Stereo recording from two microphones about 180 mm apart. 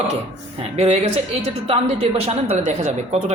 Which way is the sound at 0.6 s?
35° right (ahead or behind).